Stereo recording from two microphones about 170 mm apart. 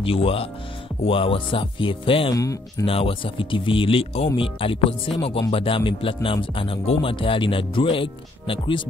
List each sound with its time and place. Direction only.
0.0 s speech: 35° left (ahead or behind)
2.9 s speech: 30° left (ahead or behind)